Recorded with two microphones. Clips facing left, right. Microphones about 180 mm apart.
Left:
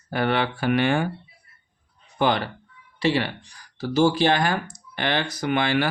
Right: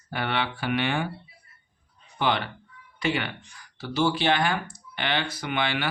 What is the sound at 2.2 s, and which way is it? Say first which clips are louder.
Speech: left 4 dB; 40° left (ahead or behind).